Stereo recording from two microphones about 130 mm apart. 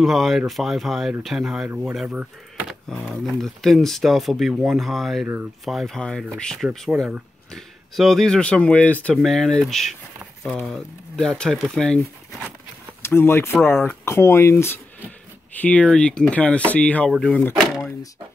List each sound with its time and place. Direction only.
0.0 s speech: centre (ahead or behind)
2.0 s a sound: 5° right (ahead or behind)
3.1 s speech: centre (ahead or behind)
13.0 s speech: 20° left (ahead or behind)